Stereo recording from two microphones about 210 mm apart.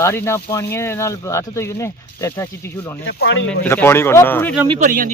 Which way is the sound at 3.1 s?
55° left (ahead or behind).